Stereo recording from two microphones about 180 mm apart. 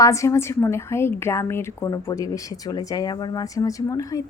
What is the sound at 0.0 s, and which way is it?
A woman's voice, 15° left (ahead or behind).